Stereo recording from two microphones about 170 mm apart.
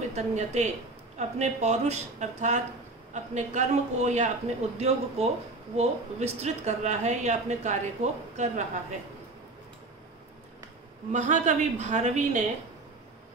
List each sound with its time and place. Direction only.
0.1 s speech: 40° right (ahead or behind)
11.1 s speech: 45° right (ahead or behind)